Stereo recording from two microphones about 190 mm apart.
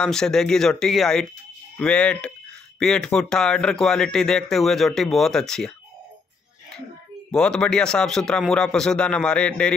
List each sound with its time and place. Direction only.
0.0 s speech: 5° left (ahead or behind)
7.3 s speech: 5° left (ahead or behind)